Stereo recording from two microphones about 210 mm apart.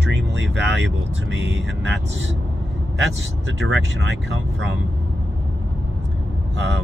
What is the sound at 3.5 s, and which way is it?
Speech, 65° right (ahead or behind).